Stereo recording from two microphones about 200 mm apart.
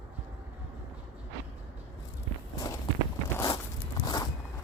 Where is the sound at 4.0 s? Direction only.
20° left (ahead or behind).